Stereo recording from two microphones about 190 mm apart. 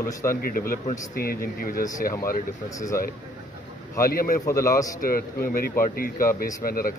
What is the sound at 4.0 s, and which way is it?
Speech, 50° left (ahead or behind).